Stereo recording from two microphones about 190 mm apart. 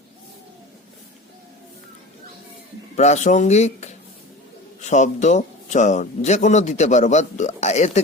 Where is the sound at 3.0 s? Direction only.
40° left (ahead or behind).